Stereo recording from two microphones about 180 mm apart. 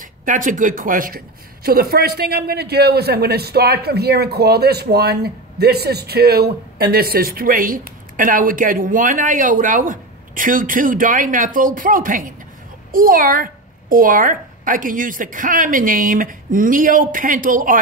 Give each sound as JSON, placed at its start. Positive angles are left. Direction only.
{"t": 0.0, "sound": "speech", "side_deg": -45}